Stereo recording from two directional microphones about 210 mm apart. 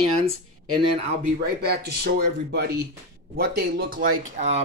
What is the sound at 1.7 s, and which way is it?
A man's voice, 50° right (ahead or behind).